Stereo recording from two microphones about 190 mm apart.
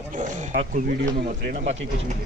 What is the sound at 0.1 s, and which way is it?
Speech, 40° right (ahead or behind).